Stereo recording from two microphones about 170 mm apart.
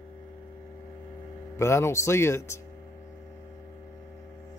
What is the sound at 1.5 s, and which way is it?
Speech, 15° left (ahead or behind).